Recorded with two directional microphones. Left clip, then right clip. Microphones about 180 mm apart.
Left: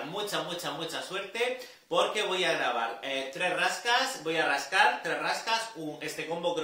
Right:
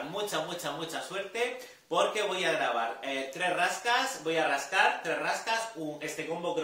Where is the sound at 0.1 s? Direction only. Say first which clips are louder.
Even; centre (ahead or behind).